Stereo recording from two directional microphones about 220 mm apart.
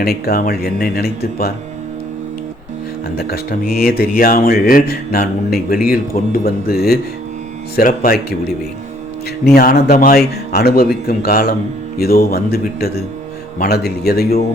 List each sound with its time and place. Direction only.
0.0 s speech: 45° left (ahead or behind)
3.2 s speech: 45° left (ahead or behind)
9.6 s a man's voice: 45° left (ahead or behind)